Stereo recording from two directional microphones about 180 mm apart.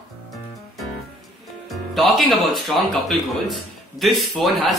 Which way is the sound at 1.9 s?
Centre (ahead or behind).